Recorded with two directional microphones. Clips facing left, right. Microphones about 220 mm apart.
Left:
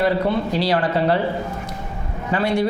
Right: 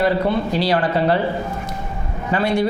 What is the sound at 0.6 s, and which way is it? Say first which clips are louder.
Speech: right 1 dB; 15° right (ahead or behind).